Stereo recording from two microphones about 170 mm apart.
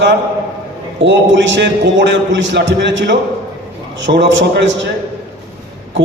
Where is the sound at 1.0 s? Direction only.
90° right.